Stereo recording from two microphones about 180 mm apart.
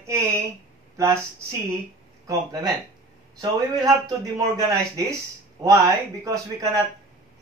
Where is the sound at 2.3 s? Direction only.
20° right (ahead or behind).